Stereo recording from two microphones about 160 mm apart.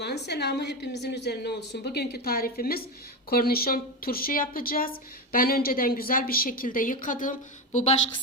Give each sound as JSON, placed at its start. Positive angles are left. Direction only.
{"t": 0.0, "sound": "a woman's voice", "side_deg": 90}